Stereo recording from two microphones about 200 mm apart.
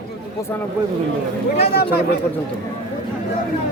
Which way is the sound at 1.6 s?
55° left (ahead or behind).